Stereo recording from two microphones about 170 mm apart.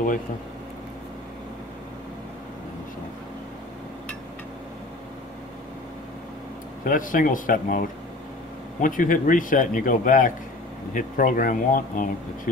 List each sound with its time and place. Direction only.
6.8 s speech: 55° left (ahead or behind)
8.8 s speech: 50° left (ahead or behind)